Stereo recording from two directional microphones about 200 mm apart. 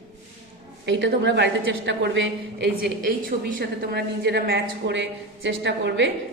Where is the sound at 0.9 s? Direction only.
60° right (ahead or behind).